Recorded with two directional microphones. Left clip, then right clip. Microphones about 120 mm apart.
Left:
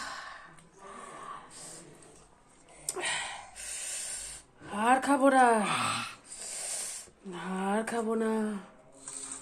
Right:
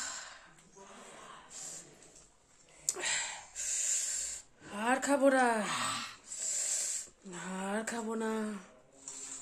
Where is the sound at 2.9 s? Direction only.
20° right (ahead or behind).